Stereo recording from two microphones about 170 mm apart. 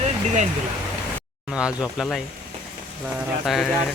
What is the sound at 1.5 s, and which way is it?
Speech, 5° right (ahead or behind).